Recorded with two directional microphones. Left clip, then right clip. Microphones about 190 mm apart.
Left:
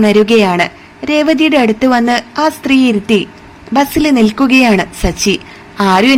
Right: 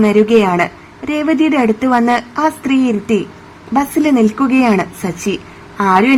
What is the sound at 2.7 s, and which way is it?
A woman's voice, 15° left (ahead or behind).